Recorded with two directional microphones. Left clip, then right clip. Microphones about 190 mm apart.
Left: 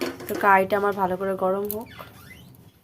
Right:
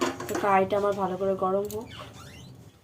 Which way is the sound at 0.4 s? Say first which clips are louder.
Left 5 dB; 60° left (ahead or behind).